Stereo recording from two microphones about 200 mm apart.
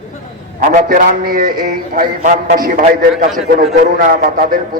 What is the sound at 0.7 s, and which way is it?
A man's voice, 40° right (ahead or behind).